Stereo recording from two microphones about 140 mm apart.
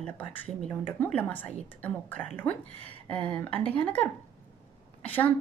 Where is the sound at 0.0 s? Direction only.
10° left (ahead or behind).